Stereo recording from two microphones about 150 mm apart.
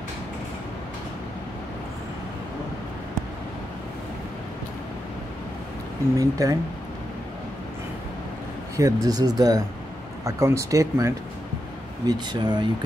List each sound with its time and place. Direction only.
6.1 s speech: 20° right (ahead or behind)
8.7 s speech: 20° right (ahead or behind)